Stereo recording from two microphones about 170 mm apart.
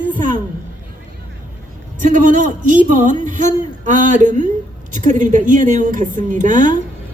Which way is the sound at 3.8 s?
45° right (ahead or behind).